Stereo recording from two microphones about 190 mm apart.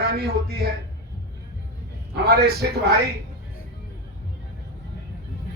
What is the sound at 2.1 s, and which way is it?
Speech, 55° right (ahead or behind).